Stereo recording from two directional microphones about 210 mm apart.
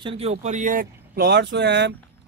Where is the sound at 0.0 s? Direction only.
30° right (ahead or behind).